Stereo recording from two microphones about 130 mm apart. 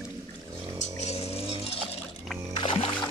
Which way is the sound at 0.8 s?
55° left (ahead or behind).